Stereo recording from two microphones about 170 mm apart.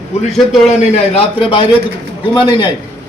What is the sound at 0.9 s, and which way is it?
A man's voice, 35° left (ahead or behind).